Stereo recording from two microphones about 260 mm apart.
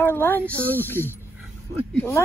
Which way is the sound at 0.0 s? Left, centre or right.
Centre.